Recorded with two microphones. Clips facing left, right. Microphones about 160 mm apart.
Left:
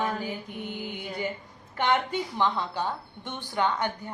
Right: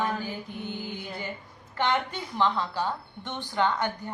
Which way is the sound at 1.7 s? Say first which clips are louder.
Left 2 dB; 15° left (ahead or behind).